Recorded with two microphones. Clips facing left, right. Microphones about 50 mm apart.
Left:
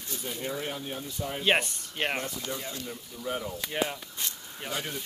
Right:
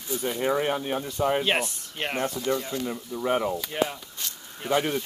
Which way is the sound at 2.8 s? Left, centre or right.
Right.